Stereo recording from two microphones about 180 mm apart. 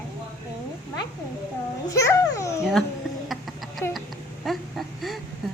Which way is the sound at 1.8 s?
15° left (ahead or behind).